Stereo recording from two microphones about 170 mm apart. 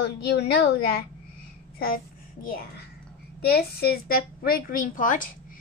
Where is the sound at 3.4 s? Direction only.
70° left (ahead or behind).